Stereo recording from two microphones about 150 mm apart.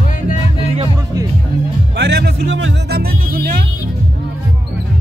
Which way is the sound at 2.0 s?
90° right.